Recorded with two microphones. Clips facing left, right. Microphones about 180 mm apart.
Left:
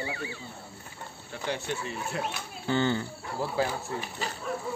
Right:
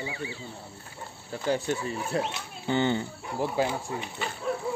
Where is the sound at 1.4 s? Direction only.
40° right (ahead or behind).